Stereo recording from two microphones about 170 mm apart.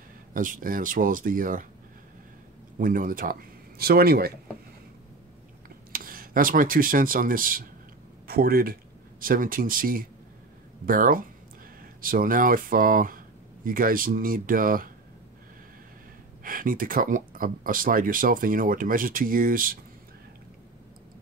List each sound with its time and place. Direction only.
0.3 s speech: 55° right (ahead or behind)
2.8 s speech: 50° right (ahead or behind)
5.9 s speech: 60° right (ahead or behind)
16.4 s speech: 55° right (ahead or behind)